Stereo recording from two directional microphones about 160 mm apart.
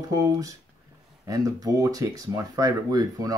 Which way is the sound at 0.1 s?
20° right (ahead or behind).